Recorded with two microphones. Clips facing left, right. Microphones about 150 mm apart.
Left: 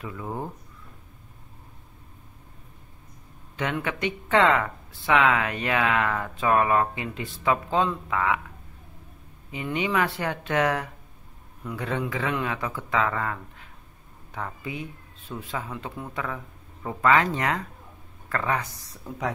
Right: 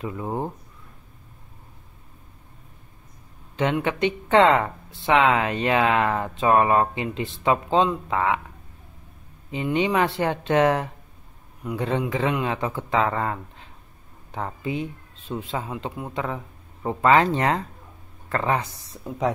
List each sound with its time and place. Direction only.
0.0 s speech: 30° right (ahead or behind)
3.5 s speech: 25° right (ahead or behind)
9.5 s speech: 25° right (ahead or behind)